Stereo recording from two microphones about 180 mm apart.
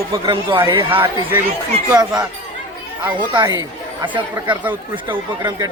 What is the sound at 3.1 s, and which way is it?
Speech, 25° right (ahead or behind).